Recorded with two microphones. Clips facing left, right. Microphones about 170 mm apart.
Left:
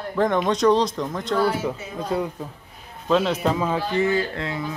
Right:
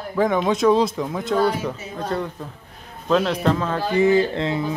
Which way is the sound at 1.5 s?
5° left (ahead or behind).